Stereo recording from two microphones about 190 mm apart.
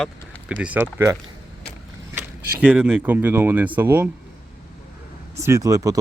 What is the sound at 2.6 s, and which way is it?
Speech, 5° right (ahead or behind).